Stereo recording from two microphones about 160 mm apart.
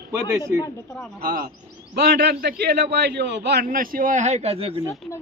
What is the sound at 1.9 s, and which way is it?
A man's voice, 90° right.